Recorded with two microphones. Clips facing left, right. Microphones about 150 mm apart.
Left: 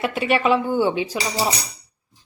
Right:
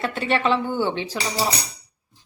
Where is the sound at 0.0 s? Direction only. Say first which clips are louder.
Left 2 dB; 10° left (ahead or behind).